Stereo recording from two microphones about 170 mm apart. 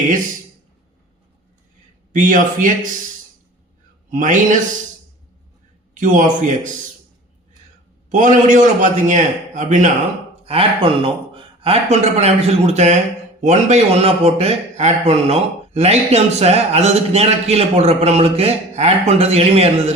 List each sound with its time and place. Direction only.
2.1 s a man's voice: 50° right (ahead or behind)
4.1 s a man's voice: 50° right (ahead or behind)
5.9 s a man's voice: 50° right (ahead or behind)
8.1 s a man's voice: 50° right (ahead or behind)
10.4 s a man's voice: 35° right (ahead or behind)